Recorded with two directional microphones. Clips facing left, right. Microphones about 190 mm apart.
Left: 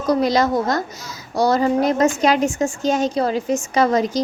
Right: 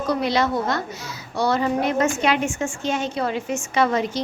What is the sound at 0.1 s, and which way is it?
A woman's voice, 40° left (ahead or behind).